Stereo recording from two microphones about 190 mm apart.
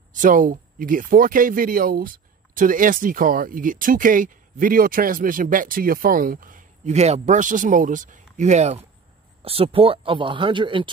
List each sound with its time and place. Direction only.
0.1 s speech: 45° right (ahead or behind); by 10.9 s 25° right (ahead or behind)